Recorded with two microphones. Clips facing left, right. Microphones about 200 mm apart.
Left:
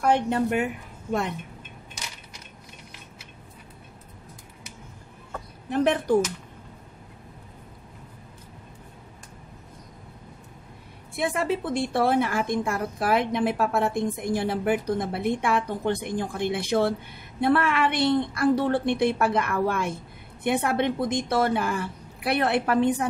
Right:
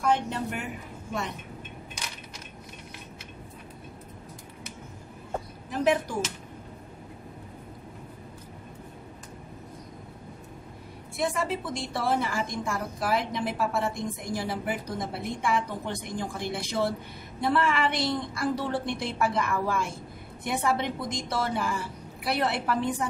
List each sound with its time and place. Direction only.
0.0 s a woman's voice: 60° left (ahead or behind)
11.1 s a woman's voice: 60° left (ahead or behind)